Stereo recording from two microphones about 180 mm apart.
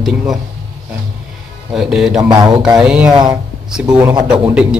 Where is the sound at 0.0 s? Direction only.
Centre (ahead or behind).